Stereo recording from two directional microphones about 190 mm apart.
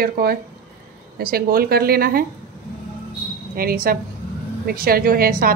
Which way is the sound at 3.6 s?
50° right (ahead or behind).